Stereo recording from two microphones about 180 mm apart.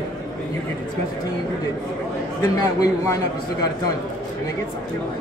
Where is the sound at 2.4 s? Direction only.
20° left (ahead or behind).